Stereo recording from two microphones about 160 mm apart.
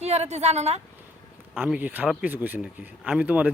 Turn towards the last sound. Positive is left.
turn(degrees=-10)  # may be behind; listen again after turning